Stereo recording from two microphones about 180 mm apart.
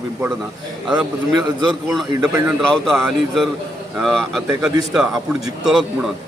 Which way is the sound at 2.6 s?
5° left (ahead or behind).